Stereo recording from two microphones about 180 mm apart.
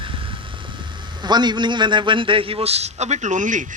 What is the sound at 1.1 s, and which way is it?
A man's voice, 25° right (ahead or behind).